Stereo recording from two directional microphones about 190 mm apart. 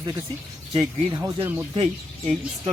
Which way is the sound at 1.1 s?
15° right (ahead or behind).